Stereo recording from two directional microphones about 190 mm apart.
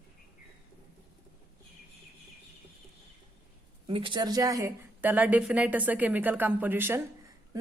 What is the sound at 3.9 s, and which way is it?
A woman's voice, 25° right (ahead or behind).